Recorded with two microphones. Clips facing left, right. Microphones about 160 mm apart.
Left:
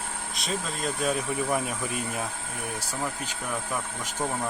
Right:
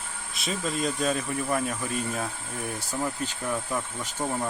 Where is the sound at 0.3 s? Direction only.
Centre (ahead or behind).